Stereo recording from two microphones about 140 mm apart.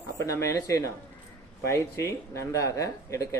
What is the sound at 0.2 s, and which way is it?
Speech, 20° left (ahead or behind).